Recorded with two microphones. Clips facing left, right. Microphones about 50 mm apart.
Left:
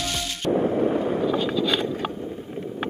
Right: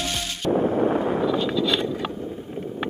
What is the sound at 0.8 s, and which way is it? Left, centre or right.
Vehicle, centre.